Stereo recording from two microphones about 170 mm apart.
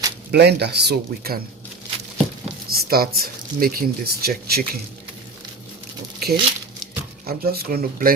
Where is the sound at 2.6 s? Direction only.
65° right (ahead or behind).